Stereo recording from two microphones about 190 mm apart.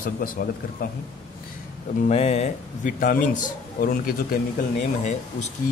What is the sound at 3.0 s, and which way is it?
Speech, 45° left (ahead or behind).